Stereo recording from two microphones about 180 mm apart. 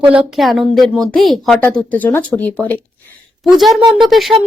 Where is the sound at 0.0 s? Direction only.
10° right (ahead or behind).